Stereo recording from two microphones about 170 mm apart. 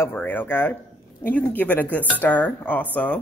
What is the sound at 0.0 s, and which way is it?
Speech, 10° left (ahead or behind).